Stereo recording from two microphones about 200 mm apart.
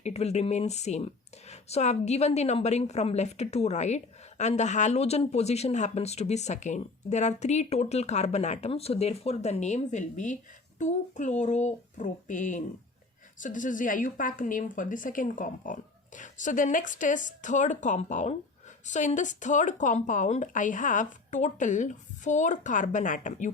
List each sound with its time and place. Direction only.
0.0 s speech: 30° left (ahead or behind)